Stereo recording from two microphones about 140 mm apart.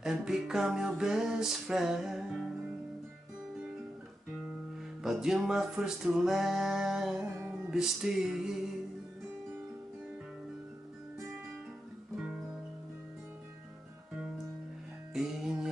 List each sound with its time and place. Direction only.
0.0 s music: 5° right (ahead or behind)
5.0 s music: 5° right (ahead or behind)
15.1 s music: 5° right (ahead or behind)